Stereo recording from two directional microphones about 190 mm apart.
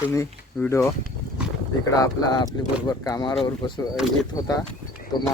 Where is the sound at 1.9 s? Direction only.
20° left (ahead or behind).